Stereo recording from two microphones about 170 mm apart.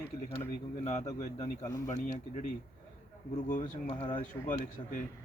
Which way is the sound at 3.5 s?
50° left (ahead or behind).